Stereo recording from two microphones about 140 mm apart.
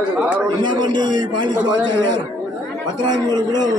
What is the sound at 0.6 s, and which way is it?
Speech, 35° right (ahead or behind).